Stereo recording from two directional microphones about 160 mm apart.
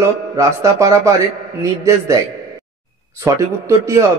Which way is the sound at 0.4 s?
20° right (ahead or behind).